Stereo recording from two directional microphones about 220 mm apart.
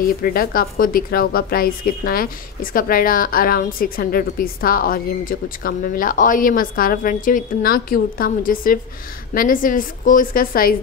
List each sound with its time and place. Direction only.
0.0 s speech: 40° left (ahead or behind)